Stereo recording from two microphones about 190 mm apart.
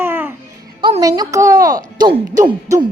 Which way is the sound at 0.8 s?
20° right (ahead or behind).